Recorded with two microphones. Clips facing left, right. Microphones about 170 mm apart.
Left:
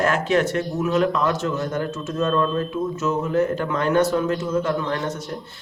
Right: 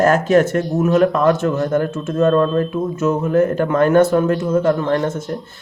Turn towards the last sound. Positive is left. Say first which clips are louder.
# right 6 dB
turn(degrees=-50)  # may be behind; listen again after turning